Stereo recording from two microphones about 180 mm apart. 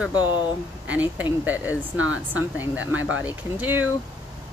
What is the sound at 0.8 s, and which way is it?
Speech, 10° right (ahead or behind).